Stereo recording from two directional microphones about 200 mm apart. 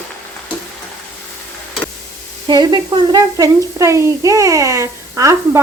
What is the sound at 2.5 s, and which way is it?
Speech, 20° right (ahead or behind).